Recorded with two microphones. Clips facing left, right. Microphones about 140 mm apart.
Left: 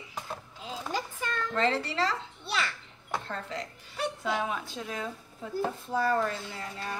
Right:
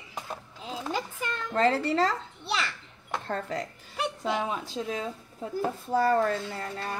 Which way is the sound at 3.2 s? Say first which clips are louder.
Right 5 dB; 45° right (ahead or behind).